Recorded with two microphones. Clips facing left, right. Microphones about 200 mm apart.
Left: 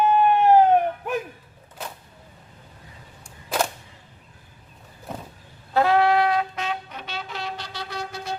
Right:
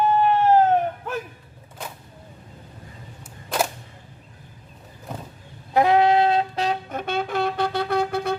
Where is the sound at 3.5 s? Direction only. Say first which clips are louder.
Right 1 dB; 5° left (ahead or behind).